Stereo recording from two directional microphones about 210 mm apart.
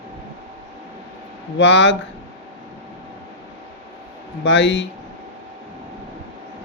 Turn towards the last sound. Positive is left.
turn(degrees=60)  # may be behind; listen again after turning